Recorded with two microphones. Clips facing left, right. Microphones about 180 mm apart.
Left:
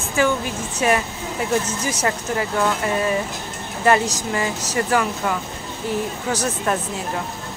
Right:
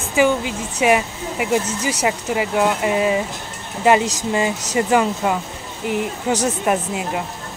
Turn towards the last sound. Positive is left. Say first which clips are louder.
# right 3 dB
turn(degrees=-15)  # may be behind; listen again after turning